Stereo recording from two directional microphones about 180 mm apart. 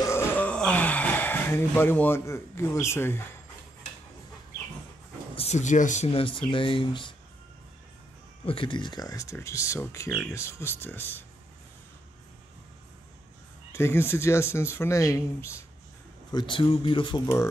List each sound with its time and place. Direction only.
0.1 s a sound: 10° left (ahead or behind)
5.3 s speech: 35° left (ahead or behind)
8.5 s speech: 30° left (ahead or behind); by 11.2 s 10° left (ahead or behind)
13.7 s speech: 15° left (ahead or behind)